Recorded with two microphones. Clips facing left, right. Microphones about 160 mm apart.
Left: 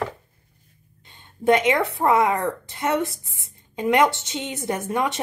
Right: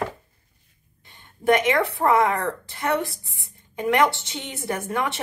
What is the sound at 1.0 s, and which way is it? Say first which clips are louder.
A woman's voice: left 1 dB; 20° left (ahead or behind).